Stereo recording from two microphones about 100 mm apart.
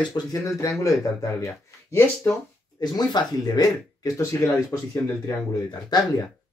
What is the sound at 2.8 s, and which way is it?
Speech, 45° left (ahead or behind).